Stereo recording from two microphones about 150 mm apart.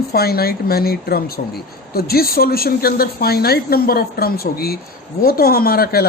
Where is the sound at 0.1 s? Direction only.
90° left.